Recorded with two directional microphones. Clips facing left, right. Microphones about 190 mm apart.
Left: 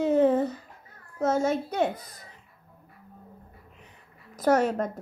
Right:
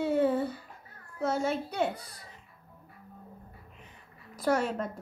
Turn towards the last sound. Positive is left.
turn(degrees=40)  # may be behind; listen again after turning